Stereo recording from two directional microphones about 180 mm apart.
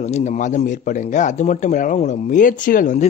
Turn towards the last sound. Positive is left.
turn(degrees=45)  # may be behind; listen again after turning